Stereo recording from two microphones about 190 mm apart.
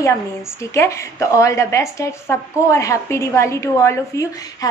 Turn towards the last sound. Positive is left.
turn(degrees=15)  # may be behind; listen again after turning